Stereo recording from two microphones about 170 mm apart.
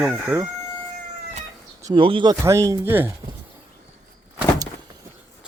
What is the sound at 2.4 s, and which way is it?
Speech, 15° right (ahead or behind).